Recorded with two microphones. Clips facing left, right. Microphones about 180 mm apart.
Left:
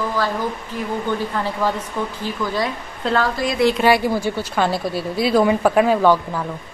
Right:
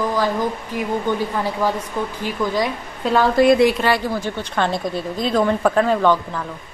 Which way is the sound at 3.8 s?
10° left (ahead or behind).